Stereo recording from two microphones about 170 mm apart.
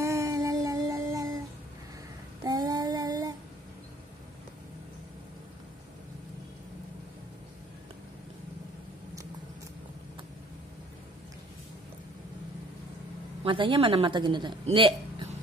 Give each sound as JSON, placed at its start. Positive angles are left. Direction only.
{"t": 0.0, "sound": "a sound", "side_deg": -15}
{"t": 2.4, "sound": "child singing", "side_deg": -25}
{"t": 13.4, "sound": "a woman's voice", "side_deg": -30}